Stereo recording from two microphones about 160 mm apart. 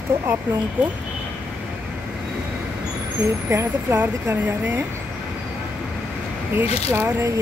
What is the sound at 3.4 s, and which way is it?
Speech, 15° right (ahead or behind).